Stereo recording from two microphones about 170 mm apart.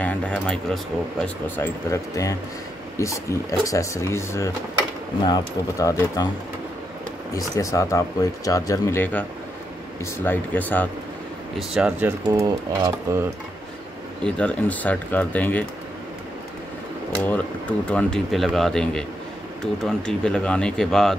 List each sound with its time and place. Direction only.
0.0 s speech: 5° left (ahead or behind)
1.2 s speech: 15° left (ahead or behind)
7.3 s speech: 20° left (ahead or behind)
11.7 s speech: 5° right (ahead or behind)
12.3 s speech: 20° right (ahead or behind)
14.2 s speech: 10° left (ahead or behind)
17.3 s speech: 10° left (ahead or behind)